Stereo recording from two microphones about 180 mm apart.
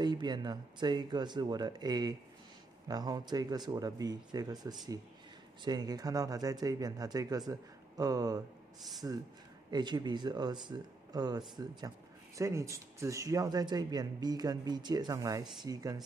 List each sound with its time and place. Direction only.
0.0 s speech: 25° right (ahead or behind)